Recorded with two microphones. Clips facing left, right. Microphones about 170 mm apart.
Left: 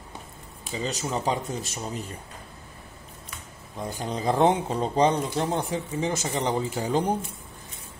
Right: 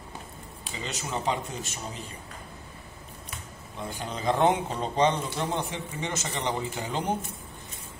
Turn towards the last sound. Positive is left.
turn(degrees=35)  # may be behind; listen again after turning